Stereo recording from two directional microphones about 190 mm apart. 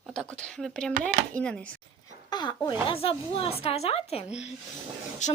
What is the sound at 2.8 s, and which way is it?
A woman's voice, 30° left (ahead or behind).